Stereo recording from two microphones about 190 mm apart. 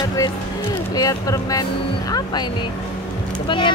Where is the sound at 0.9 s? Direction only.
20° left (ahead or behind).